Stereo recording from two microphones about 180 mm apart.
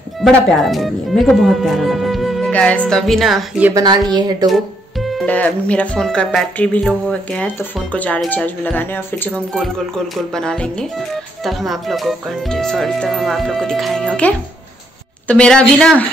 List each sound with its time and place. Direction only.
0.2 s speech: centre (ahead or behind)
3.7 s a woman's voice: 20° right (ahead or behind)
4.5 s speech: centre (ahead or behind)